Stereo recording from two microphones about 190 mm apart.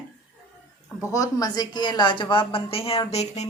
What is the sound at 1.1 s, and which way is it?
Speech, 20° left (ahead or behind).